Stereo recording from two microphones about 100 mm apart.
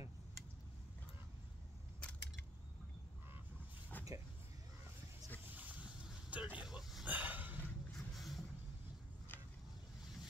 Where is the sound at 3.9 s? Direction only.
20° left (ahead or behind).